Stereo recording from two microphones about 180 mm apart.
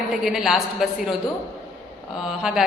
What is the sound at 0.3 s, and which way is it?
Speech, centre (ahead or behind).